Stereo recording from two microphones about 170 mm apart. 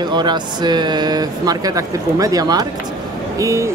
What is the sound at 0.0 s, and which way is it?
Speech, 25° right (ahead or behind).